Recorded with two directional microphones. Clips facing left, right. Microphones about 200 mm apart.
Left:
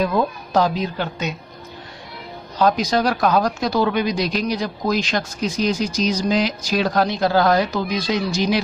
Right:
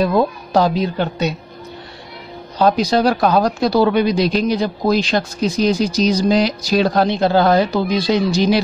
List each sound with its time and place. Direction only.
0.0 s speech: 35° right (ahead or behind)
2.6 s speech: 35° right (ahead or behind)